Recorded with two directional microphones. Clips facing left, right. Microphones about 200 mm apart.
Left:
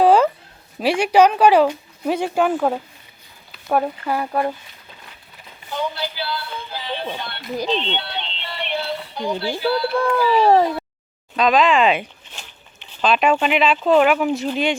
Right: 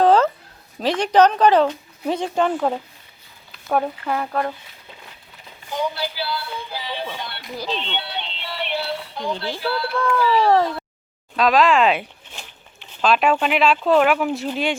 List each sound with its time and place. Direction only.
0.0 s a sound: 10° left (ahead or behind)
0.8 s speech: 10° left (ahead or behind)
5.7 s music: 10° right (ahead or behind)
7.2 s speech: 10° right (ahead or behind)
7.5 s speech: 15° left (ahead or behind)
7.9 s music: 10° right (ahead or behind)
9.3 s speech: 10° left (ahead or behind)
9.6 s speech: centre (ahead or behind)
9.9 s speech: 25° left (ahead or behind)
10.2 s speech: 15° left (ahead or behind)
11.3 s speech: centre (ahead or behind)